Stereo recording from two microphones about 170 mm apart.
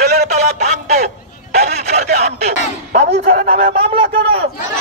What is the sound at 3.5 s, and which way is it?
Speech, 35° right (ahead or behind).